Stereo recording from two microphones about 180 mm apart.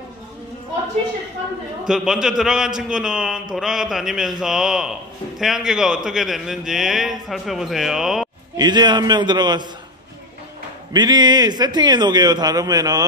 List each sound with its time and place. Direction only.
1.9 s a man's voice: 5° right (ahead or behind)
8.5 s a man's voice: 25° right (ahead or behind)
10.9 s a man's voice: 25° right (ahead or behind)